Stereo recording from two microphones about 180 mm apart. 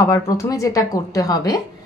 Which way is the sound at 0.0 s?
20° left (ahead or behind).